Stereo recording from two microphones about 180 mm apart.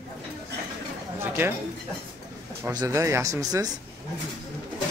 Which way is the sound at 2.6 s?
20° right (ahead or behind).